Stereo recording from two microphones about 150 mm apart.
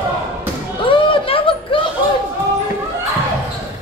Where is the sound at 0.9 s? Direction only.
35° left (ahead or behind).